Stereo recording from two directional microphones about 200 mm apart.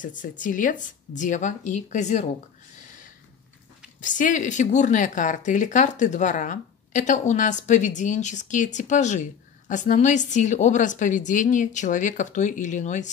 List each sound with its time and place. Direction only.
0.0 s speech: 40° left (ahead or behind)
4.0 s speech: 40° left (ahead or behind)